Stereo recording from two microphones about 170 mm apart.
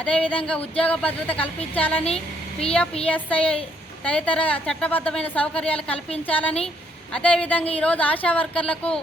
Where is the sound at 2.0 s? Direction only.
35° left (ahead or behind).